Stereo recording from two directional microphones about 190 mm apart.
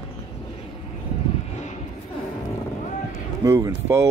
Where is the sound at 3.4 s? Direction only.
15° right (ahead or behind).